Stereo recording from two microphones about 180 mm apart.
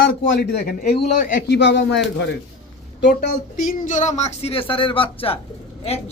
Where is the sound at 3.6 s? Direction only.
45° left (ahead or behind).